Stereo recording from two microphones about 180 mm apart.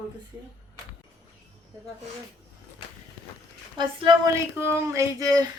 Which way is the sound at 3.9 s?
30° right (ahead or behind).